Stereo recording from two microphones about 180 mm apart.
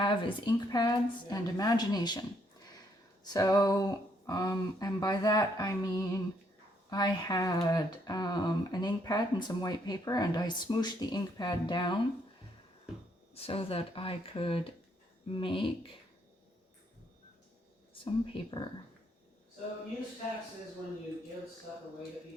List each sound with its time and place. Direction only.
0.0 s speech: 25° left (ahead or behind)
3.3 s speech: 20° left (ahead or behind)
13.3 s speech: 35° left (ahead or behind)
17.9 s speech: 30° left (ahead or behind)